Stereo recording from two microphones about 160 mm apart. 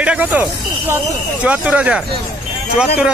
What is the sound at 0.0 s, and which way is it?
Speech, 10° right (ahead or behind).